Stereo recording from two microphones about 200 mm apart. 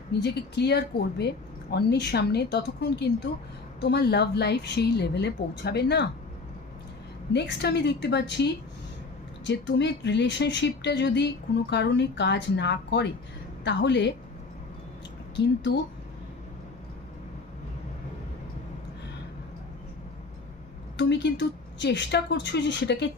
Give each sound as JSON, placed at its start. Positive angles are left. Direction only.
{"t": 0.2, "sound": "speech", "side_deg": 55}
{"t": 7.3, "sound": "speech", "side_deg": 55}
{"t": 9.5, "sound": "speech", "side_deg": 60}
{"t": 15.3, "sound": "speech", "side_deg": 60}
{"t": 20.9, "sound": "speech", "side_deg": 60}